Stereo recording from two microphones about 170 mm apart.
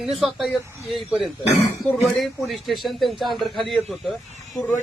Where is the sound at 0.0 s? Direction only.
Centre (ahead or behind).